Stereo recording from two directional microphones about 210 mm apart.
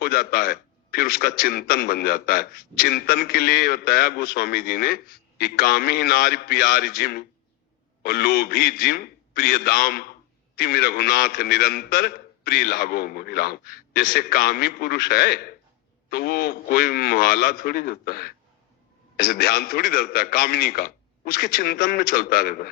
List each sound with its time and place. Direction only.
0.0 s a man's voice: 45° left (ahead or behind)